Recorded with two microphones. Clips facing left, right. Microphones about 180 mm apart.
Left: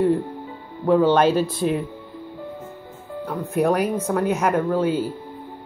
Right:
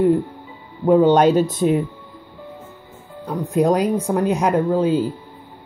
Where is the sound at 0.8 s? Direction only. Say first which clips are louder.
Right 3 dB; 20° right (ahead or behind).